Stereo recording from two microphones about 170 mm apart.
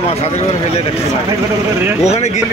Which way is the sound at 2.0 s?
40° left (ahead or behind).